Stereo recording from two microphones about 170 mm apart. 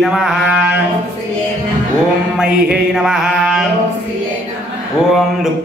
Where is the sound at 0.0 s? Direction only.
Centre (ahead or behind).